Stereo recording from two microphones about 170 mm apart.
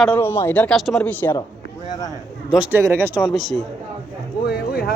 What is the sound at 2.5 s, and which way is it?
Speech, 5° right (ahead or behind).